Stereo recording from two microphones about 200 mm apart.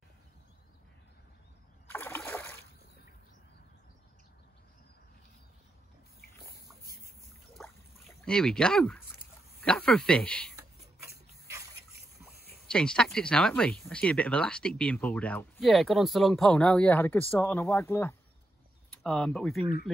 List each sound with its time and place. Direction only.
1.9 s a sound: 10° left (ahead or behind)
7.6 s boat: centre (ahead or behind)
8.3 s speech: 5° left (ahead or behind)
12.6 s speech: 5° left (ahead or behind)